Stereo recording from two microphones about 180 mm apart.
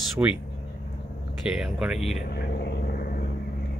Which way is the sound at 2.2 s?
60° left (ahead or behind).